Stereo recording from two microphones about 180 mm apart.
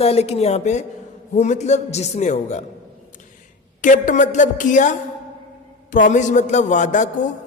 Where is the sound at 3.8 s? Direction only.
45° left (ahead or behind).